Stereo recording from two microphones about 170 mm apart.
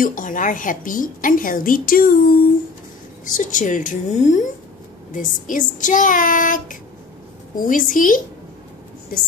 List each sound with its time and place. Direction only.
0.0 s a woman's voice: 50° left (ahead or behind)